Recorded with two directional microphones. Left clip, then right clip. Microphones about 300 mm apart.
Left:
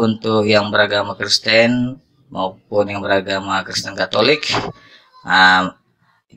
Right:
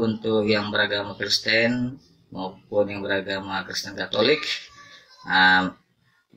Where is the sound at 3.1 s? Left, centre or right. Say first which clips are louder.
Left 9 dB; left.